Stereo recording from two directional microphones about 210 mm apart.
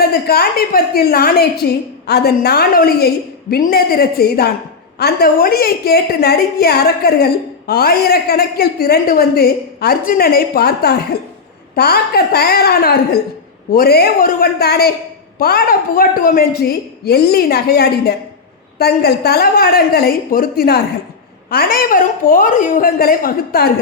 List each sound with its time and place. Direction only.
0.1 s a woman's voice: 45° left (ahead or behind)